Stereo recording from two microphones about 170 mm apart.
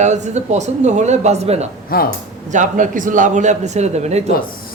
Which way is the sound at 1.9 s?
60° left (ahead or behind).